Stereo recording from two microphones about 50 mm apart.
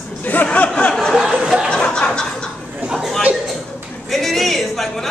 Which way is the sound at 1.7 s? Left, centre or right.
Centre.